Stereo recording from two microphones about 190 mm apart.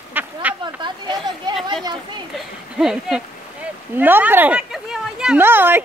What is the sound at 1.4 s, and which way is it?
Chatter, 25° right (ahead or behind).